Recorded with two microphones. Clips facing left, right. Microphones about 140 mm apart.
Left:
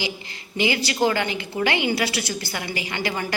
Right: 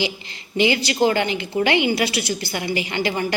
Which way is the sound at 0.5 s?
20° right (ahead or behind).